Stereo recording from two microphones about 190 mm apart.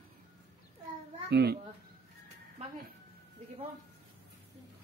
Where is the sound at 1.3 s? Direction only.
60° right (ahead or behind).